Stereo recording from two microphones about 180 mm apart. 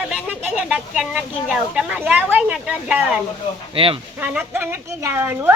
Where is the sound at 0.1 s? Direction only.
5° right (ahead or behind).